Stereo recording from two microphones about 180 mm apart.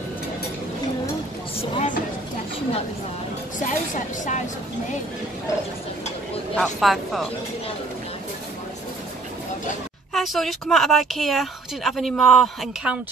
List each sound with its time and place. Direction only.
1.6 s vehicle: 40° left (ahead or behind)
3.6 s a woman's voice: 45° left (ahead or behind)
6.5 s speech: 5° left (ahead or behind)
10.1 s speech: centre (ahead or behind)